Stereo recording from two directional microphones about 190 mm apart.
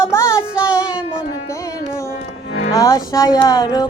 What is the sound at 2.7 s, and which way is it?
Music, 20° left (ahead or behind).